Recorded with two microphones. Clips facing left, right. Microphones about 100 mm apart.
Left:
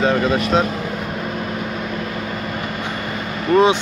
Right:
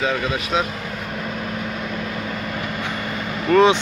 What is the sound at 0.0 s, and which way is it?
Speech, 40° left (ahead or behind).